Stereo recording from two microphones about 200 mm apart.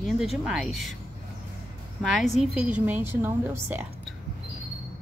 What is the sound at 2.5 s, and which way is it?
A woman's voice, 5° right (ahead or behind).